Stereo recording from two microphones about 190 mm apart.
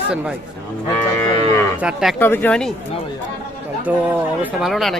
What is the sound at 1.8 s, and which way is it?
Speech, 5° right (ahead or behind).